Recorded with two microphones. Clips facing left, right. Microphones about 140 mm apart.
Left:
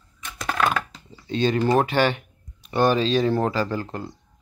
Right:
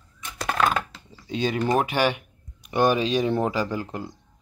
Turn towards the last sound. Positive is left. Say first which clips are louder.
# left 1 dB
turn(degrees=-10)  # may be behind; listen again after turning